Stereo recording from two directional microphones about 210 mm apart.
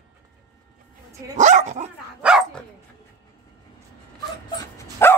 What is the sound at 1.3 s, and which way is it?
Dog, 35° right (ahead or behind).